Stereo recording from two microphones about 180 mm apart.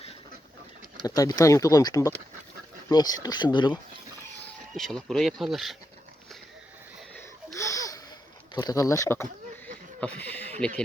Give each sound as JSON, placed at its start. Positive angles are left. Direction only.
{"t": 1.0, "sound": "speech", "side_deg": 20}
{"t": 4.7, "sound": "speech", "side_deg": 0}
{"t": 7.2, "sound": "a sound", "side_deg": 15}
{"t": 8.5, "sound": "speech", "side_deg": 20}